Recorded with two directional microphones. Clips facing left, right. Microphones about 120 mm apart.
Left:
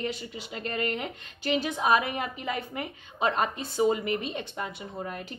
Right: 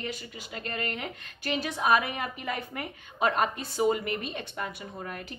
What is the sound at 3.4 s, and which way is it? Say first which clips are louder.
Speech: left 1 dB; 25° left (ahead or behind).